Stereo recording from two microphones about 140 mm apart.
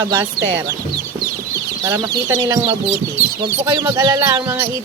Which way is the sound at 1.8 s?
25° right (ahead or behind).